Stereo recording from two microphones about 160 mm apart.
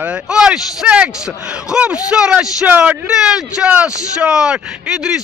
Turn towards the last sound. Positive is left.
turn(degrees=-5)  # may be behind; listen again after turning